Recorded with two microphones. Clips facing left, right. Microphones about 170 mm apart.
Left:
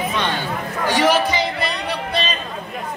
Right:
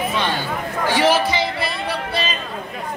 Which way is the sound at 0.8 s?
10° right (ahead or behind).